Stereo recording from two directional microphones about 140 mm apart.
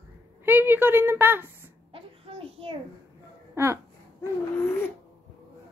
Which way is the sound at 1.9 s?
40° right (ahead or behind).